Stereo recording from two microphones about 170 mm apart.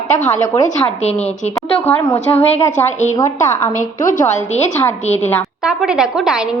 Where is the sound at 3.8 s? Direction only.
50° left (ahead or behind).